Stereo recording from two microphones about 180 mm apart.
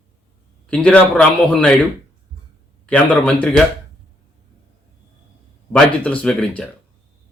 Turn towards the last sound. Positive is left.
turn(degrees=5)  # may be behind; listen again after turning